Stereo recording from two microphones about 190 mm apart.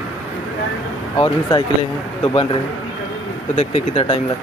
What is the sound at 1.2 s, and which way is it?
Speech, 20° left (ahead or behind).